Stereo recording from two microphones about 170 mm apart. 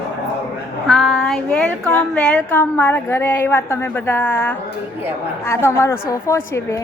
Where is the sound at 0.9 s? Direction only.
5° left (ahead or behind).